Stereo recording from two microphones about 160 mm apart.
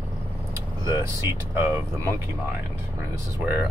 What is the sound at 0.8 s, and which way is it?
Speech, 15° right (ahead or behind).